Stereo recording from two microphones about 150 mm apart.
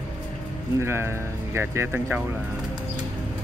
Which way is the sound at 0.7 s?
15° right (ahead or behind).